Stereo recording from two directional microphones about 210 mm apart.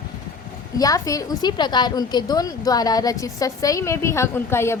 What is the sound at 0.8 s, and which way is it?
A woman's voice, 15° left (ahead or behind).